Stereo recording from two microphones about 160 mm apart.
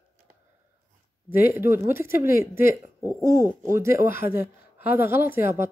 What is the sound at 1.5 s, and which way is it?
Speech, 15° right (ahead or behind).